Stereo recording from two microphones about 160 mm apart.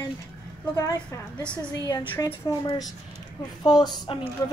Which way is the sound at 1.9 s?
25° left (ahead or behind).